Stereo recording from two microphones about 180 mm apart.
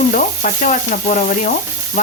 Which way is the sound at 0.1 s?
45° left (ahead or behind).